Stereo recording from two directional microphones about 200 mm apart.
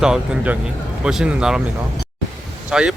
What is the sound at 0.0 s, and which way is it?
Speech, 5° right (ahead or behind).